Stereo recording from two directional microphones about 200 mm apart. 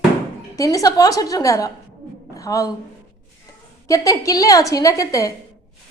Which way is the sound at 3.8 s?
15° left (ahead or behind).